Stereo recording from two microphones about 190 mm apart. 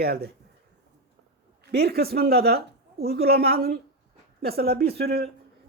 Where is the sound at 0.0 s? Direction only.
55° right (ahead or behind).